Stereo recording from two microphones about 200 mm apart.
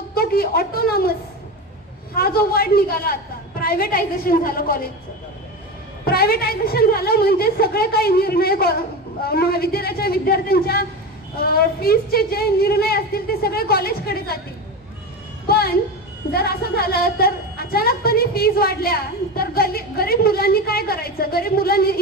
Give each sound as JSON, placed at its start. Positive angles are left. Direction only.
{"t": 0.1, "sound": "a sound", "side_deg": 50}
{"t": 2.1, "sound": "a woman's voice", "side_deg": 50}
{"t": 6.0, "sound": "a woman's voice", "side_deg": 50}
{"t": 15.4, "sound": "music", "side_deg": 50}
{"t": 16.3, "sound": "a woman's voice", "side_deg": 50}